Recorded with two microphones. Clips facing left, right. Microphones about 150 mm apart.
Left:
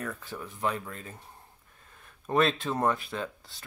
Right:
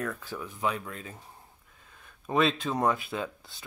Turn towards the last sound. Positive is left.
turn(degrees=-5)  # may be behind; listen again after turning